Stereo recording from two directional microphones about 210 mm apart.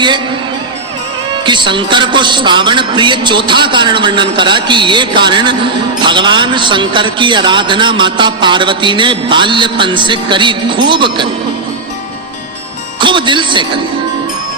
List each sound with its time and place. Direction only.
1.3 s a man's voice: 20° right (ahead or behind)
13.0 s music: 25° right (ahead or behind)